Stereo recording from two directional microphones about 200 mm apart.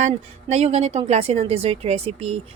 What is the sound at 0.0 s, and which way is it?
A woman's voice, 35° right (ahead or behind).